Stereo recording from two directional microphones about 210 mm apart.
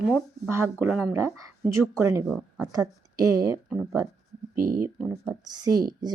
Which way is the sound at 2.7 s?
15° right (ahead or behind).